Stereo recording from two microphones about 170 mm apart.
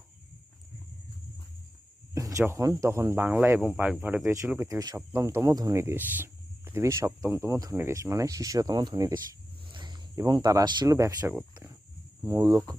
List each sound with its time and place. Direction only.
2.1 s speech: 20° right (ahead or behind)